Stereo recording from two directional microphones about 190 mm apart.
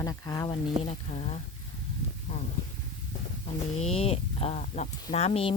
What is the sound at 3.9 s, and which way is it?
Speech, 30° left (ahead or behind).